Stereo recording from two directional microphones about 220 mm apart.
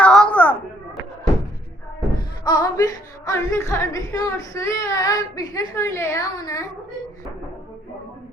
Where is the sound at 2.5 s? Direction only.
20° left (ahead or behind).